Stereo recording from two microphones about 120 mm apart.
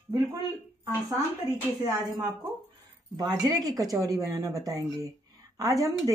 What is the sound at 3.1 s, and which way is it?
A woman's voice, 35° right (ahead or behind).